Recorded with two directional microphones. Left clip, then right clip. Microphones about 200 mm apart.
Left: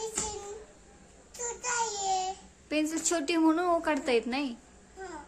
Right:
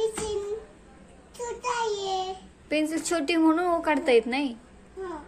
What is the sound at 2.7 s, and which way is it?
A woman's voice, 15° left (ahead or behind).